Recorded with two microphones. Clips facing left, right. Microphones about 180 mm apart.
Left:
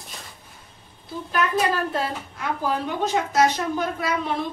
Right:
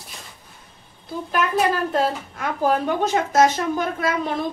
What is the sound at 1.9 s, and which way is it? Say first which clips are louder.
A woman's voice: right 5 dB; 50° right (ahead or behind).